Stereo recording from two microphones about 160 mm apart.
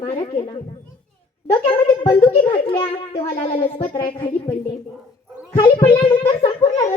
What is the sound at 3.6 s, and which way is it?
Speech, 35° left (ahead or behind).